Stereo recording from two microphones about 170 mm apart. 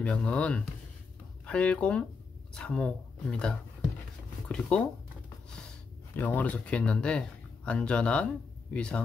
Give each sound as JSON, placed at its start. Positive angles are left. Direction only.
{"t": 0.0, "sound": "speech", "side_deg": 5}
{"t": 6.1, "sound": "speech", "side_deg": 10}